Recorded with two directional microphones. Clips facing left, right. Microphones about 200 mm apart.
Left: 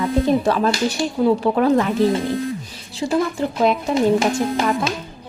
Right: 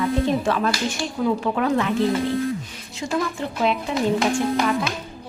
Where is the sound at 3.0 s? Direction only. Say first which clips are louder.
Left 5 dB; 35° left (ahead or behind).